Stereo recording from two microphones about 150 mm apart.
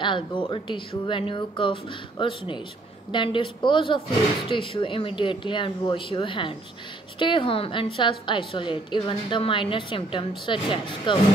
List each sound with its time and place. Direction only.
0.0 s a woman's voice: 35° left (ahead or behind)